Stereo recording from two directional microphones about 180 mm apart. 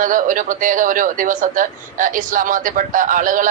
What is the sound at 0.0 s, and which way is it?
Speech, 50° right (ahead or behind).